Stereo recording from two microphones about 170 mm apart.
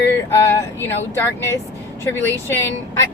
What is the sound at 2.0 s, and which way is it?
Speech, 15° left (ahead or behind).